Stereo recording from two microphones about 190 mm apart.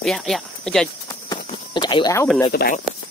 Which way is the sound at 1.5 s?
25° left (ahead or behind).